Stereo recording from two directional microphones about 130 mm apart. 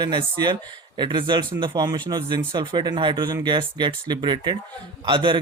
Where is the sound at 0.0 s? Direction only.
35° right (ahead or behind).